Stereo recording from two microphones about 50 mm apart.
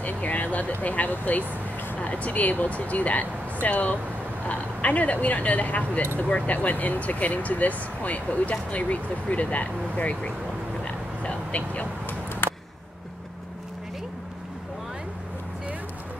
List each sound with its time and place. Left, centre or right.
0.0 s vehicle: left
0.8 s speech: left
12.4 s a sound: left